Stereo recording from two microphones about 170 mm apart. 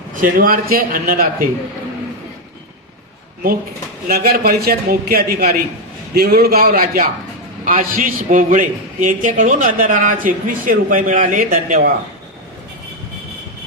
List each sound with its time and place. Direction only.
0.2 s a man's voice: 55° right (ahead or behind)
4.1 s a man's voice: 65° right (ahead or behind)